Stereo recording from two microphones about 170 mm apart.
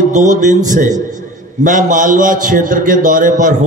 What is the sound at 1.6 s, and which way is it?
A man's voice, 50° right (ahead or behind).